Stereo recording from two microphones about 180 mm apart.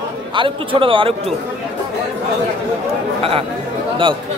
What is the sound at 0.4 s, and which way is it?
Speech, 30° right (ahead or behind).